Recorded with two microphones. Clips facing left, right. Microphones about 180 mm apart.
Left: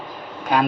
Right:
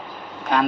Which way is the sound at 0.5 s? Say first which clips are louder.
Left 1 dB; 10° left (ahead or behind).